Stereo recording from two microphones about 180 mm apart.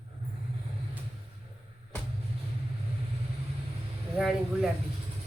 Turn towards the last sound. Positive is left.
turn(degrees=-5)  # may be behind; listen again after turning